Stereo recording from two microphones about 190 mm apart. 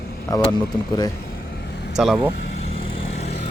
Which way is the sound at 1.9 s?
Centre (ahead or behind).